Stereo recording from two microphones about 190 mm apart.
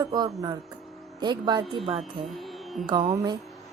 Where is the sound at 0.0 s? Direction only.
20° right (ahead or behind).